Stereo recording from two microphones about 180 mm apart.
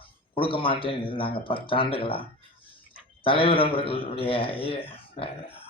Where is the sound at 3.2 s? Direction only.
30° left (ahead or behind).